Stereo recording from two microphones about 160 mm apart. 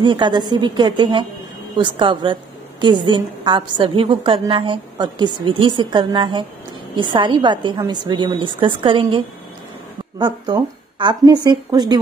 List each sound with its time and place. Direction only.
0.0 s a woman's voice: 30° right (ahead or behind)